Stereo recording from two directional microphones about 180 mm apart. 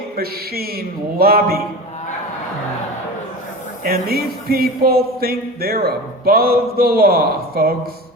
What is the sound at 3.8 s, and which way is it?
Speech, 55° right (ahead or behind).